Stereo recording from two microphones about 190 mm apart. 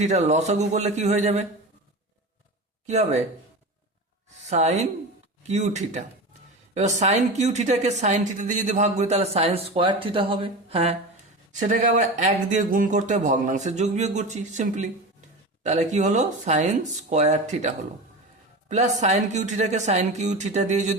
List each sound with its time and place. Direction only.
0.0 s a woman's voice: 35° right (ahead or behind)
2.8 s a woman's voice: 35° right (ahead or behind)
4.4 s a woman's voice: 35° right (ahead or behind)
11.7 s a woman's voice: 40° right (ahead or behind)